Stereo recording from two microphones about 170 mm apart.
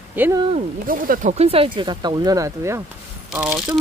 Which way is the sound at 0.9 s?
55° right (ahead or behind).